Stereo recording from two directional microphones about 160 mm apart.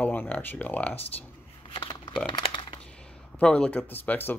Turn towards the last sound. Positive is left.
turn(degrees=10)  # may be behind; listen again after turning